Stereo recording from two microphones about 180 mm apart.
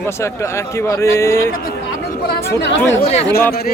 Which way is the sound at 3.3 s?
10° left (ahead or behind).